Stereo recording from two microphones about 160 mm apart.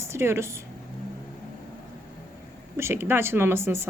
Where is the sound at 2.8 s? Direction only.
15° right (ahead or behind).